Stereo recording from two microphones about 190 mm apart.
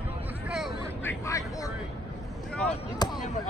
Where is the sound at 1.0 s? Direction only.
15° left (ahead or behind).